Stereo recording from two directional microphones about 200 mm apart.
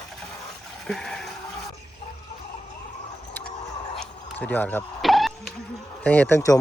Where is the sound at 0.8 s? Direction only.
Centre (ahead or behind).